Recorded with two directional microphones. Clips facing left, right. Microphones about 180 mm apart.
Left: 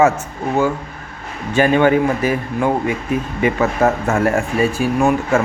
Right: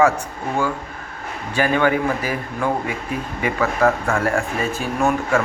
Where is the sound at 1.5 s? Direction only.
20° left (ahead or behind).